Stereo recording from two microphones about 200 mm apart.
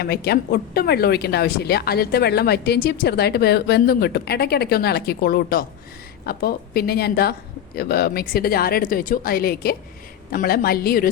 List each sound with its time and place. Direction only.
0.0 s speech: 55° left (ahead or behind)